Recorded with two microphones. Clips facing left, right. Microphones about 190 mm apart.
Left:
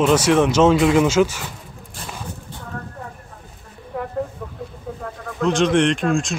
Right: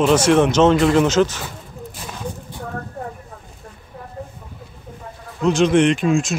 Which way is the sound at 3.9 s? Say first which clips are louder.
Left 11 dB; 75° left (ahead or behind).